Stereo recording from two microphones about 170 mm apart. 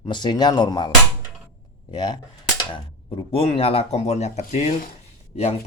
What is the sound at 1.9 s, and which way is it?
Speech, 25° left (ahead or behind).